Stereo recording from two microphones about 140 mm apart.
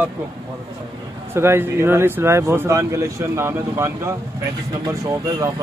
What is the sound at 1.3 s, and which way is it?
Speech, 15° right (ahead or behind).